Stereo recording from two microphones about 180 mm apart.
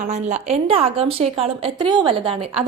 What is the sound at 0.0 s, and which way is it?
A woman's voice, 40° right (ahead or behind).